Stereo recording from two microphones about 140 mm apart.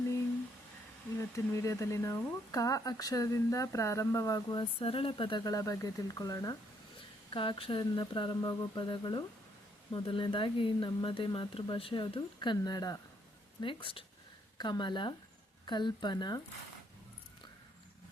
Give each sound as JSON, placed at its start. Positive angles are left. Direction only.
{"t": 1.5, "sound": "speech", "side_deg": 20}
{"t": 4.8, "sound": "speech", "side_deg": 40}
{"t": 7.3, "sound": "speech", "side_deg": 35}